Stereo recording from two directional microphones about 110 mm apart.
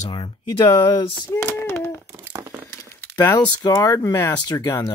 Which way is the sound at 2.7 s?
25° left (ahead or behind).